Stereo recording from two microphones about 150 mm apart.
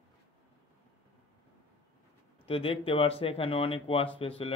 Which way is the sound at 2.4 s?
40° left (ahead or behind).